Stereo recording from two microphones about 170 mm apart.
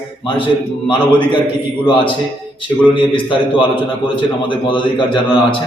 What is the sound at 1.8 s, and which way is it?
A man's voice, 30° left (ahead or behind).